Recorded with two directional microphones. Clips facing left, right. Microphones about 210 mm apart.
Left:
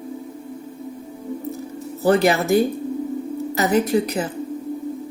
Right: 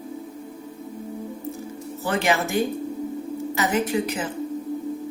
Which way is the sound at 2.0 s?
40° left (ahead or behind).